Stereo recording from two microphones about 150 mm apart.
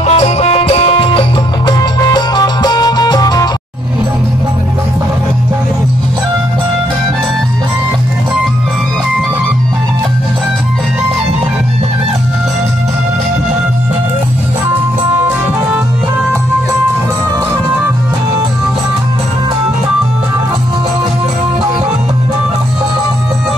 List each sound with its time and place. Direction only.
0.0 s music: 45° left (ahead or behind); by 3.4 s 25° left (ahead or behind)